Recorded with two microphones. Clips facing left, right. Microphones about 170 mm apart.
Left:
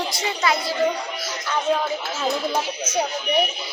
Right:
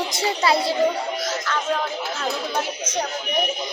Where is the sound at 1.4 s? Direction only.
15° left (ahead or behind).